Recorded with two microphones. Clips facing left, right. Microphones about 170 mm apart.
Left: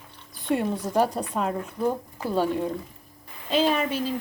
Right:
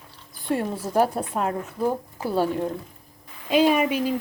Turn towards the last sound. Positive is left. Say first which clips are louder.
# right 4 dB
turn(degrees=-10)  # may be behind; listen again after turning